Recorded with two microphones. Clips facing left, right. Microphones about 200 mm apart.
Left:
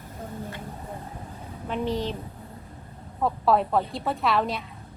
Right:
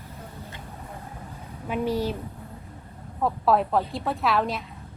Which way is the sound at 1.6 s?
10° right (ahead or behind).